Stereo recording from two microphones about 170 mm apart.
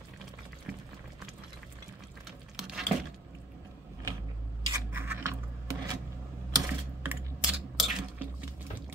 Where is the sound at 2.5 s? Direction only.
Centre (ahead or behind).